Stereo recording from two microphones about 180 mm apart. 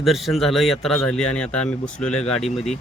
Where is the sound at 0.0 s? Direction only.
Centre (ahead or behind).